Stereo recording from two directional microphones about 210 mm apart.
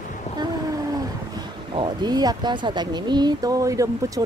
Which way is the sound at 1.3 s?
20° right (ahead or behind).